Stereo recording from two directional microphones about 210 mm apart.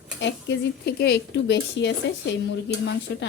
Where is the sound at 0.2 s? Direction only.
60° left (ahead or behind).